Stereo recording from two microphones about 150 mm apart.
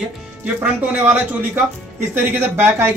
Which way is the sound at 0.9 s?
10° right (ahead or behind).